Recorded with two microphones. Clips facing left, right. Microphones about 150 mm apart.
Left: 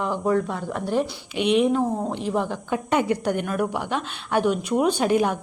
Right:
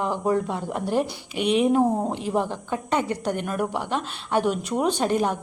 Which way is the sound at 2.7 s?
10° left (ahead or behind).